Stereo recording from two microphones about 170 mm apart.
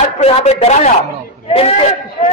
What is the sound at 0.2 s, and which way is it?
A man's voice, 40° left (ahead or behind).